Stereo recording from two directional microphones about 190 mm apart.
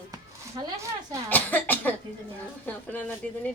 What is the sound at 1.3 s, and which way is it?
Speech, 10° left (ahead or behind).